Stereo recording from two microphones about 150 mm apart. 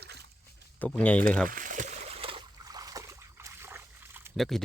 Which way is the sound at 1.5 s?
60° right (ahead or behind).